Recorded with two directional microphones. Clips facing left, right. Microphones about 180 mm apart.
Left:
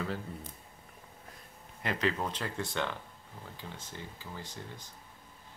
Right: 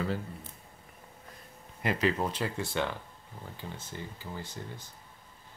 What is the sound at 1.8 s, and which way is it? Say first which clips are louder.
Speech: right 3 dB; 10° right (ahead or behind).